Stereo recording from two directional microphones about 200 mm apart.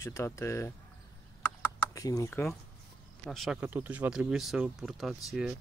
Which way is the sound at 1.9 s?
15° left (ahead or behind).